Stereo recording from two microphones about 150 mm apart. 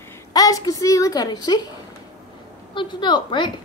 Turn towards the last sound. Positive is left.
turn(degrees=30)  # may be behind; listen again after turning